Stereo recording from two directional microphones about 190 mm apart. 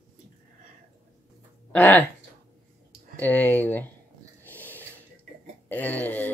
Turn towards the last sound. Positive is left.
turn(degrees=10)  # may be behind; listen again after turning